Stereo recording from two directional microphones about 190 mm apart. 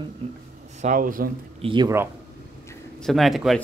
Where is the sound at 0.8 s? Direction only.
45° right (ahead or behind).